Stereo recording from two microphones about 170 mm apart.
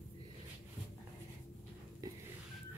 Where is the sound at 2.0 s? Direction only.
20° right (ahead or behind).